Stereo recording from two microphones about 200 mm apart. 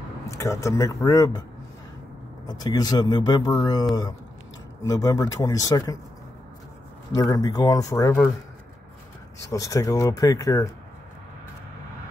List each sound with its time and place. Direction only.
0.3 s speech: 15° left (ahead or behind)
2.4 s speech: 20° left (ahead or behind)
4.8 s speech: 15° left (ahead or behind)
7.2 s speech: 15° left (ahead or behind)
9.5 s speech: 15° left (ahead or behind)